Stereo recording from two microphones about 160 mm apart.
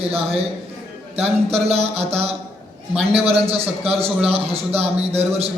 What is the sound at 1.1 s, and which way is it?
A man's voice, 40° right (ahead or behind).